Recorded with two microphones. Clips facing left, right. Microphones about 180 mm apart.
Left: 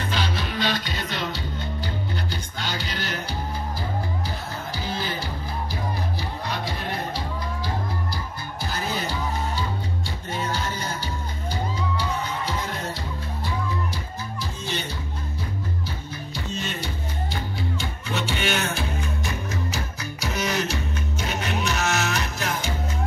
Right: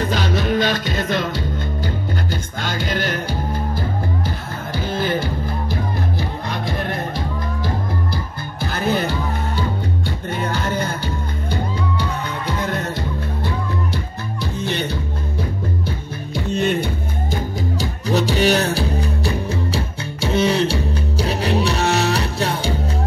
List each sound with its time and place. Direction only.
0.1 s music: 45° right (ahead or behind)
4.8 s music: 55° right (ahead or behind)
14.4 s music: 60° right (ahead or behind)
16.5 s music: 60° right (ahead or behind)
17.6 s music: 40° right (ahead or behind)